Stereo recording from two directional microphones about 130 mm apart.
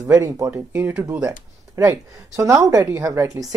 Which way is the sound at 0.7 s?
15° right (ahead or behind).